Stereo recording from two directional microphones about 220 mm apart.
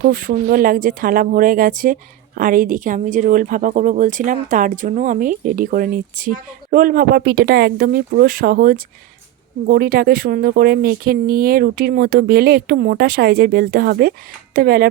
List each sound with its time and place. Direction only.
0.0 s speech: 40° right (ahead or behind)